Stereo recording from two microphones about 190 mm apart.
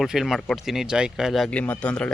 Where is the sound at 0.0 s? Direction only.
Centre (ahead or behind).